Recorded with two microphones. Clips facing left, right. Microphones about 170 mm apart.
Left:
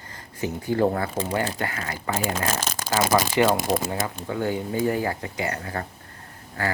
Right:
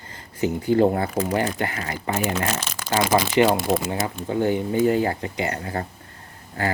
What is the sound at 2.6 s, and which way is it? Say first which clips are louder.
Shuffling cards: left 3 dB; 40° left (ahead or behind).